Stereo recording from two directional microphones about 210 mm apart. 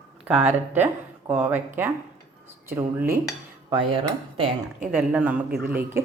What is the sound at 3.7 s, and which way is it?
Speech, 25° right (ahead or behind).